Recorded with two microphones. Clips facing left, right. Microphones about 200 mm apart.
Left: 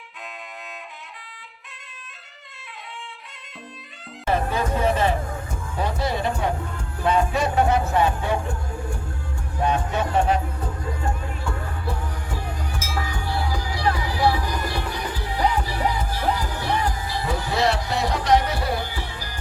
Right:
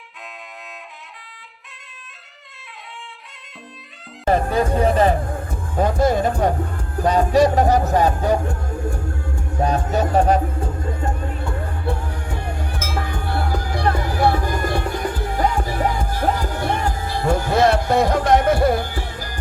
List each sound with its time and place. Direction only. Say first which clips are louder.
4.3 s music: right 5 dB; 40° right (ahead or behind)
5.0 s music: right 4 dB; 50° right (ahead or behind)
7.0 s a sound: right 6 dB; 40° right (ahead or behind)
9.6 s music: right 3 dB; 40° right (ahead or behind)
12.4 s music: right 3 dB; 55° right (ahead or behind)